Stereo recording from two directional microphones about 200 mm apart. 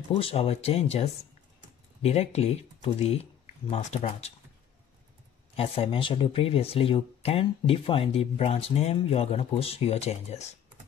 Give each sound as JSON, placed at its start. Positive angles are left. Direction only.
{"t": 0.1, "sound": "speech", "side_deg": 30}
{"t": 5.6, "sound": "speech", "side_deg": 25}